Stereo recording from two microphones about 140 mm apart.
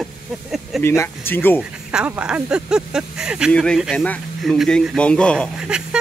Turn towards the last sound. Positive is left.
turn(degrees=-5)  # may be behind; listen again after turning